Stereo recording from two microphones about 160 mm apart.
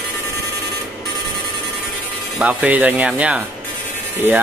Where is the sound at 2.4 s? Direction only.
10° right (ahead or behind).